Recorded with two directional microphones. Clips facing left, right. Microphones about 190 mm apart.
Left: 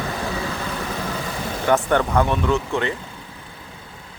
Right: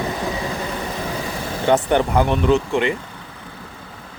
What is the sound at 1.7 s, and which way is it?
Speech, 20° right (ahead or behind).